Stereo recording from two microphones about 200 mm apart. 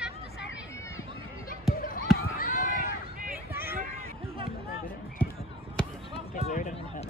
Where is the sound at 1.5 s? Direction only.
45° left (ahead or behind).